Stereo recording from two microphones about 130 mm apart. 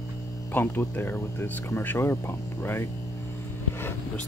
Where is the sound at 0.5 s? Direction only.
15° left (ahead or behind).